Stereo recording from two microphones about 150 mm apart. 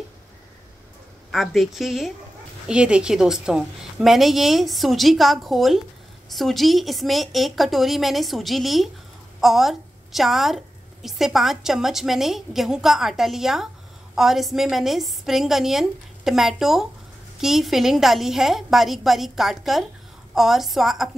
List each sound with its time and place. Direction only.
1.3 s a woman's voice: centre (ahead or behind)